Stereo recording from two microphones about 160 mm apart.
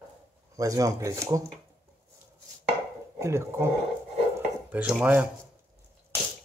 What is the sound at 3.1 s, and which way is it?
Speech, 15° right (ahead or behind).